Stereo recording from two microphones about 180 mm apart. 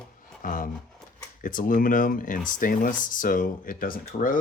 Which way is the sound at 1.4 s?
50° left (ahead or behind).